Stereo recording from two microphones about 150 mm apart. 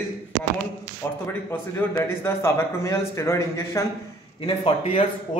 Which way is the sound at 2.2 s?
20° left (ahead or behind).